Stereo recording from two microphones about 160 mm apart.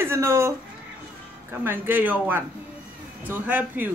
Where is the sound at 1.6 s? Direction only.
15° right (ahead or behind).